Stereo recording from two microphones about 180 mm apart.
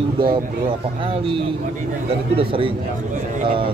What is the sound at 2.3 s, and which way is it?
Speech, 30° right (ahead or behind).